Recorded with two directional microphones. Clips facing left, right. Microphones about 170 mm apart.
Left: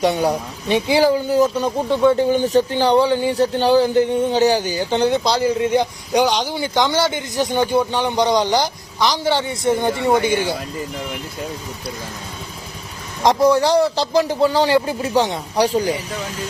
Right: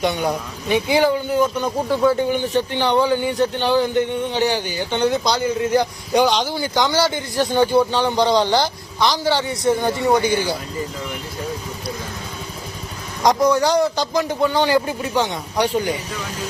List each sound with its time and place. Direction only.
0.0 s speech: 30° left (ahead or behind)
1.9 s speech: 5° right (ahead or behind)
2.1 s speech: 35° left (ahead or behind)
6.1 s a man's voice: 15° left (ahead or behind)
13.2 s speech: 25° left (ahead or behind)